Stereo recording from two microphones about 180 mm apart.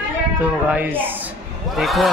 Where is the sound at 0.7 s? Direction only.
10° right (ahead or behind).